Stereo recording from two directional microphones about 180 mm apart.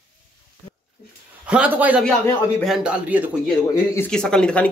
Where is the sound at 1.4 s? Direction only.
5° right (ahead or behind).